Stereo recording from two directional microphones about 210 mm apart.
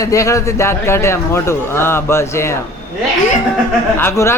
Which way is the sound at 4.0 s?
10° left (ahead or behind).